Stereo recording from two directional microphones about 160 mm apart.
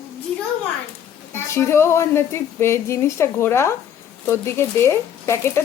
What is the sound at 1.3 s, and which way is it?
Speech, 15° left (ahead or behind).